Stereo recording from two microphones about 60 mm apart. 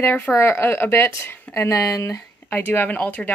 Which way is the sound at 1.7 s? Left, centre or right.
Left.